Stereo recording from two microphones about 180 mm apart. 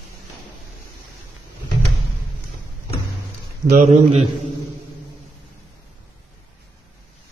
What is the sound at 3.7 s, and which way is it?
Speech, 40° right (ahead or behind).